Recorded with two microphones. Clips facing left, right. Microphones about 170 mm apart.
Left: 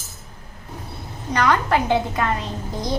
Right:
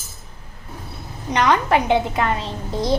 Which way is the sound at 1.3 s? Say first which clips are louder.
Right 2 dB; 20° right (ahead or behind).